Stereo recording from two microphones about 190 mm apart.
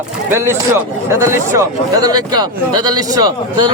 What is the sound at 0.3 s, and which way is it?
Speech, 15° right (ahead or behind).